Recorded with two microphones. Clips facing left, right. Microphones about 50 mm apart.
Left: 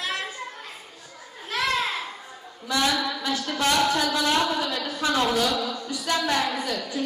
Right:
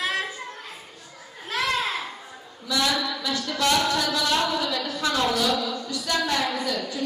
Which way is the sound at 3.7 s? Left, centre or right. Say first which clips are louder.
Left 2 dB; centre.